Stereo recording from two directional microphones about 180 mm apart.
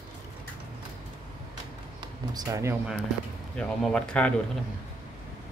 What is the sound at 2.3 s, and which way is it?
Speech, 20° right (ahead or behind).